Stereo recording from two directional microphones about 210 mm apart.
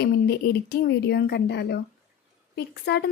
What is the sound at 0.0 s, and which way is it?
A woman's voice, 50° left (ahead or behind).